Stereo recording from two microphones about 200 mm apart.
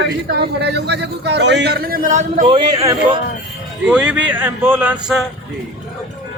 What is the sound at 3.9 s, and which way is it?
Speech, 5° right (ahead or behind).